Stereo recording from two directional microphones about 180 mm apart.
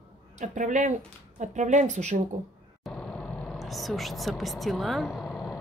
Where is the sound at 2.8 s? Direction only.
5° left (ahead or behind).